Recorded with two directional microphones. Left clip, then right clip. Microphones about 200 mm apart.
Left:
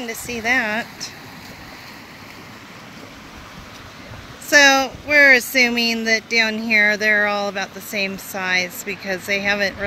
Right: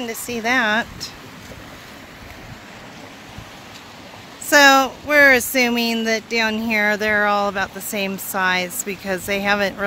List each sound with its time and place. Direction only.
0.0 s speech: 20° right (ahead or behind)
4.5 s speech: 15° right (ahead or behind)